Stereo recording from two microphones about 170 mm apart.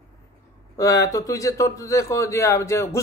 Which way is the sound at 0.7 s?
20° left (ahead or behind).